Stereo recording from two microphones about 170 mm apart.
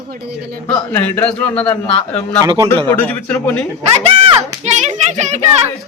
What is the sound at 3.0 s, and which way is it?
Speech, 10° left (ahead or behind).